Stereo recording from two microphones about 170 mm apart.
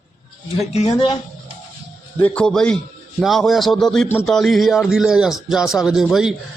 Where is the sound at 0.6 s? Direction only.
40° left (ahead or behind).